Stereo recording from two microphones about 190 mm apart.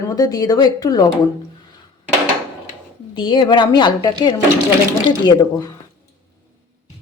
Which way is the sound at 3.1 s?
25° left (ahead or behind).